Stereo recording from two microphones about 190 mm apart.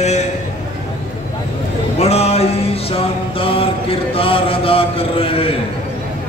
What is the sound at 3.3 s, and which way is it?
Mantra, 30° left (ahead or behind).